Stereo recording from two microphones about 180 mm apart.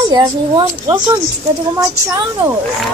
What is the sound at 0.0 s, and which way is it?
A woman's voice, 20° right (ahead or behind).